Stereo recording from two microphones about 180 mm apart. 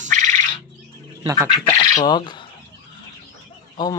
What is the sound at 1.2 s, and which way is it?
Speech, 20° right (ahead or behind).